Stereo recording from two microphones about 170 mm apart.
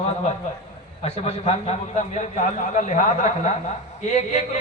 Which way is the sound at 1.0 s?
35° left (ahead or behind).